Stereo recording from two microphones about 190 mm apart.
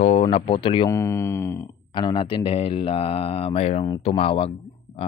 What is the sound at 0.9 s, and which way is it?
Speech, 15° left (ahead or behind).